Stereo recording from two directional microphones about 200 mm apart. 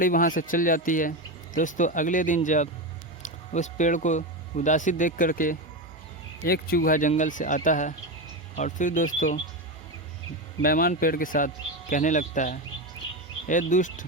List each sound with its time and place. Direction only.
0.0 s speech: 45° left (ahead or behind)
10.6 s speech: 45° left (ahead or behind)